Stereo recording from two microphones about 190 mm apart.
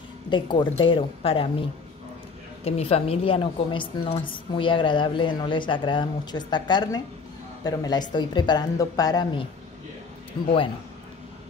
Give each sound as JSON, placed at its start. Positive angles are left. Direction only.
{"t": 0.3, "sound": "a woman's voice", "side_deg": 25}
{"t": 2.6, "sound": "a woman's voice", "side_deg": 30}